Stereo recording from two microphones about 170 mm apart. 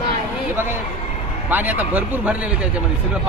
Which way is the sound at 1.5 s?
10° right (ahead or behind).